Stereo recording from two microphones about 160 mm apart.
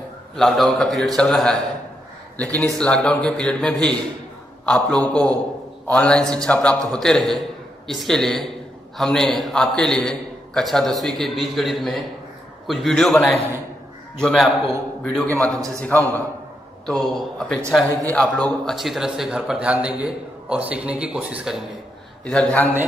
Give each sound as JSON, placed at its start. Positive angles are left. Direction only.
{"t": 0.4, "sound": "a man's voice", "side_deg": 0}
{"t": 15.5, "sound": "a man's voice", "side_deg": -20}
{"t": 15.8, "sound": "a man's voice", "side_deg": 10}
{"t": 22.2, "sound": "a man's voice", "side_deg": 5}